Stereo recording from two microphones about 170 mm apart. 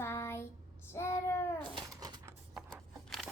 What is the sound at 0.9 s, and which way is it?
Child singing, 15° left (ahead or behind).